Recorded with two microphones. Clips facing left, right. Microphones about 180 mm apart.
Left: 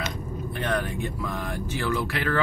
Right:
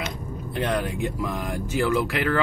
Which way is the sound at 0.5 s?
15° right (ahead or behind).